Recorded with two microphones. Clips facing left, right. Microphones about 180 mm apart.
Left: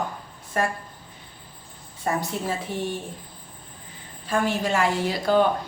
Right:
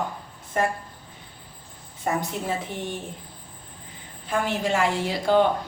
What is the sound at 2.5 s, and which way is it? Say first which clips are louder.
Speech: left 1 dB; 20° right (ahead or behind).